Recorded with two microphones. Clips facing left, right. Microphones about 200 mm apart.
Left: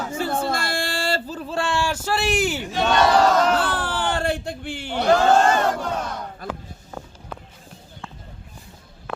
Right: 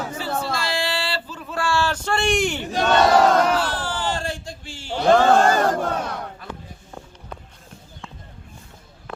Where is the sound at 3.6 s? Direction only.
55° left (ahead or behind).